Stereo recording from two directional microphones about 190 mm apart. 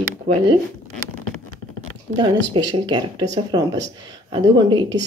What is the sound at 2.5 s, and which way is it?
Speech, 25° right (ahead or behind).